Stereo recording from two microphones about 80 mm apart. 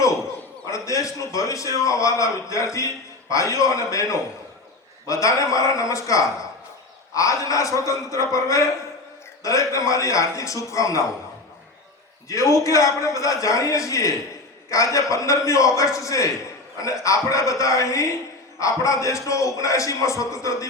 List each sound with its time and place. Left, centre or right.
0.7 s a man's voice: left
12.3 s a man's voice: left